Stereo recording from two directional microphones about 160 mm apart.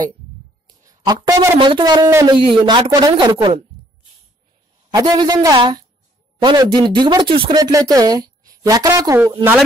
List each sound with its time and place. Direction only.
0.8 s speech: 20° right (ahead or behind)
1.6 s speech: 30° right (ahead or behind)
2.0 s speech: 20° right (ahead or behind)
2.3 s speech: 30° right (ahead or behind)
4.9 s speech: 25° right (ahead or behind)